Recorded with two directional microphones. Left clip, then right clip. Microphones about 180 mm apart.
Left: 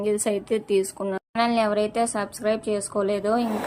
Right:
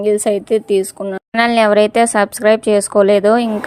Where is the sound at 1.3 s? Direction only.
45° right (ahead or behind).